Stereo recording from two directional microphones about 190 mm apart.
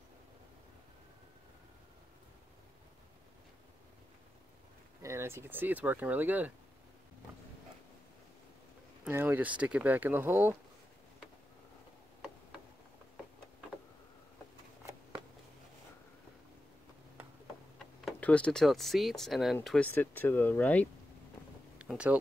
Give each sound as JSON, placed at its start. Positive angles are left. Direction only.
{"t": 5.0, "sound": "speech", "side_deg": -15}
{"t": 9.0, "sound": "speech", "side_deg": -10}
{"t": 18.0, "sound": "speech", "side_deg": 5}
{"t": 21.7, "sound": "speech", "side_deg": -5}